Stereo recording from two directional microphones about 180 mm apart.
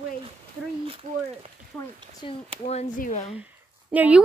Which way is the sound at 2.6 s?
40° left (ahead or behind).